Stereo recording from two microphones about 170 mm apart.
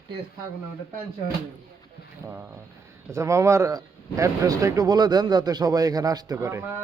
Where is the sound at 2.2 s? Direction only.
15° right (ahead or behind).